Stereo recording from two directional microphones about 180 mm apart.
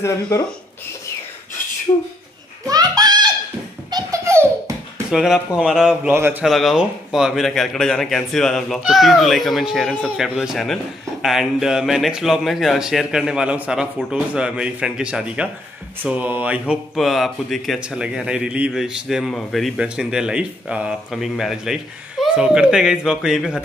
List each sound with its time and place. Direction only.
0.0 s speech: 15° left (ahead or behind)
2.6 s a sound: 20° right (ahead or behind)
3.9 s laughter: 15° right (ahead or behind)
5.1 s a man's voice: centre (ahead or behind)
6.4 s speech: centre (ahead or behind)